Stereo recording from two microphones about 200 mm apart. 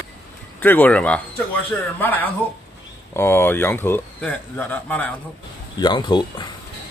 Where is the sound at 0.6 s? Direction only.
10° left (ahead or behind).